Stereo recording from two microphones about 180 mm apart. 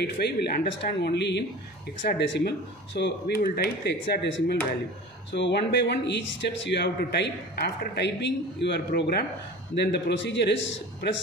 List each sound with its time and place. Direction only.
0.0 s speech: 65° left (ahead or behind)